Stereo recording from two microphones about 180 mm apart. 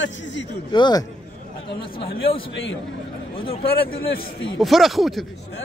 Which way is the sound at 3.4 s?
30° left (ahead or behind).